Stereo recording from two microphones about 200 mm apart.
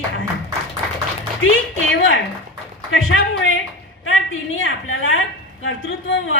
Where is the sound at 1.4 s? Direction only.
80° left.